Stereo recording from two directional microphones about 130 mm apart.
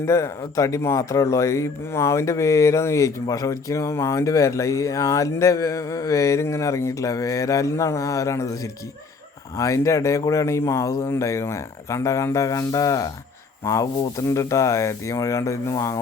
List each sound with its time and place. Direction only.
0.0 s speech: 20° left (ahead or behind)